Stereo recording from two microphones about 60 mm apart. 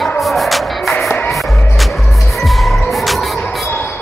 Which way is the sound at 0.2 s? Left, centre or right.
Centre.